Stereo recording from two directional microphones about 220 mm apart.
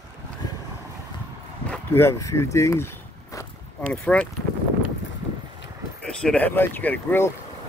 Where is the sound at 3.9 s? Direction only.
5° left (ahead or behind).